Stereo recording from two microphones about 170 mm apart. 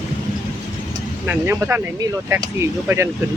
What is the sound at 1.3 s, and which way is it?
Speech, 15° right (ahead or behind).